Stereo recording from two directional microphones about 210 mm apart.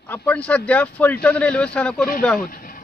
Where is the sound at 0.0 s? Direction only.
10° left (ahead or behind).